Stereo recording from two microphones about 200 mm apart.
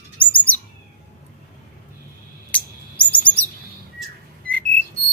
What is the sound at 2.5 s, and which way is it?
Chirp, 5° left (ahead or behind).